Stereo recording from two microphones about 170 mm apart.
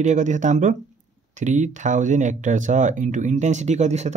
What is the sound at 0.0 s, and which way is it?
Speech, 45° right (ahead or behind).